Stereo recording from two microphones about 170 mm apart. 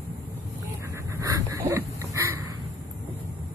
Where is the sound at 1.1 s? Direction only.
20° right (ahead or behind).